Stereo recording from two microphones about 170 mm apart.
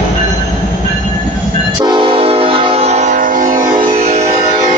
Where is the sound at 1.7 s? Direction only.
25° right (ahead or behind); by 3.7 s 50° right (ahead or behind).